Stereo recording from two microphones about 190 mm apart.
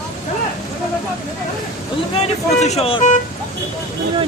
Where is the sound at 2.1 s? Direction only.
35° left (ahead or behind).